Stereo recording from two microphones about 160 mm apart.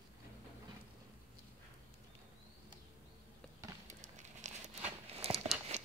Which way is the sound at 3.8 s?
50° right (ahead or behind).